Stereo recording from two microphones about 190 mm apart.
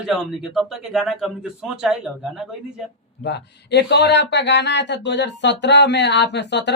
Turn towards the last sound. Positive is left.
turn(degrees=65)  # may be behind; listen again after turning